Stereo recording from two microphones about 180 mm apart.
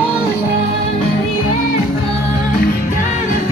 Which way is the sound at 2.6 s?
50° left (ahead or behind).